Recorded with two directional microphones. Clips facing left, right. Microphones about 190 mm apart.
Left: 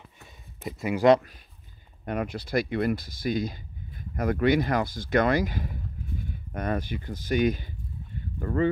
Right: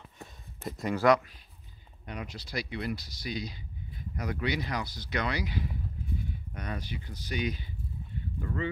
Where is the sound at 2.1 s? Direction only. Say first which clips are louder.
Left 10 dB; 55° left (ahead or behind).